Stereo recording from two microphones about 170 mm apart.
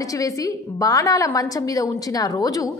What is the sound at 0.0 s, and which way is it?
A woman's voice, 20° left (ahead or behind).